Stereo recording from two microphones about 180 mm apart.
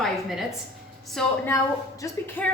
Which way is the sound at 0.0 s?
Centre (ahead or behind).